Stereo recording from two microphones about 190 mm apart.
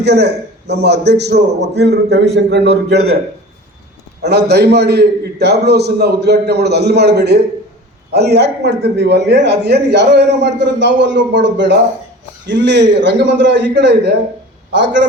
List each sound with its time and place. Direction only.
0.0 s a man's voice: 60° right (ahead or behind)
4.2 s a man's voice: 60° right (ahead or behind)